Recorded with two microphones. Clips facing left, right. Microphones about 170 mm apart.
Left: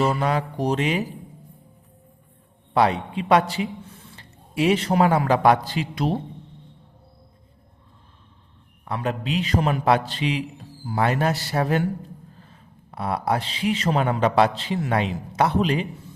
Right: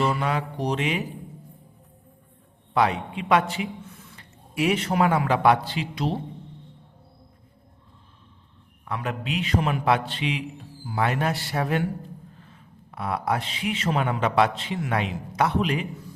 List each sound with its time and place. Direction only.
0.1 s a man's voice: 40° left (ahead or behind)
2.7 s a man's voice: 35° left (ahead or behind)
8.8 s a man's voice: 30° left (ahead or behind)